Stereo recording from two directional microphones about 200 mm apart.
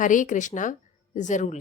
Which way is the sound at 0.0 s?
40° left (ahead or behind).